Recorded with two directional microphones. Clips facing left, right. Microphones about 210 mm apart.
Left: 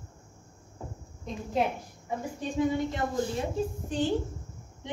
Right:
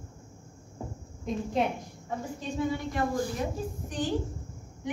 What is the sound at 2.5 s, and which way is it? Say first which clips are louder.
A woman's voice: left 2 dB; 20° left (ahead or behind).